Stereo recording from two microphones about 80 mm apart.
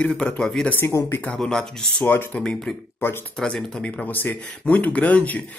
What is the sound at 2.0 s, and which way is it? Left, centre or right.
Speech, left.